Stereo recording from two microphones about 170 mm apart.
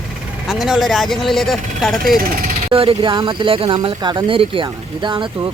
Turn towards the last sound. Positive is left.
turn(degrees=-30)  # may be behind; listen again after turning